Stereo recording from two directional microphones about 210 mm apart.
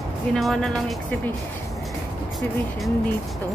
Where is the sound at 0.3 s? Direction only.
Centre (ahead or behind).